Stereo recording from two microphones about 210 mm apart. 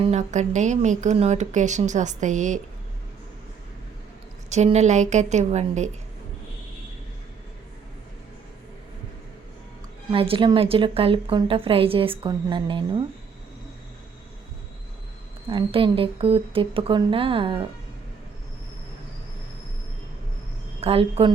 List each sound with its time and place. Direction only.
0.0 s speech: 30° right (ahead or behind)
4.4 s speech: 30° right (ahead or behind)
10.1 s a woman's voice: 25° right (ahead or behind)
15.4 s a woman's voice: 25° right (ahead or behind)
20.8 s a woman's voice: 25° right (ahead or behind)